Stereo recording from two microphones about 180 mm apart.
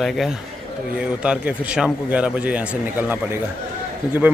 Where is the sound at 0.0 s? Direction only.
Centre (ahead or behind).